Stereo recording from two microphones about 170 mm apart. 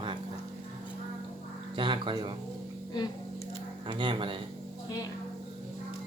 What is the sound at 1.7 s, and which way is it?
Speech, 30° right (ahead or behind).